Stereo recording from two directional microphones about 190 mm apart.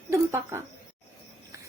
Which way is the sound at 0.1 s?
15° right (ahead or behind).